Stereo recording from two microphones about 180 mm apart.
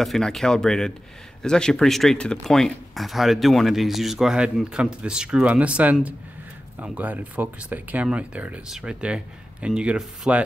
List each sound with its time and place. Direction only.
0.0 s speech: centre (ahead or behind)